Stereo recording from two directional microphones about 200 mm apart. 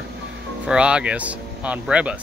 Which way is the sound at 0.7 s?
5° right (ahead or behind).